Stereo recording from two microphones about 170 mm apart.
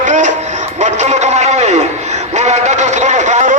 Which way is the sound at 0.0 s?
45° right (ahead or behind).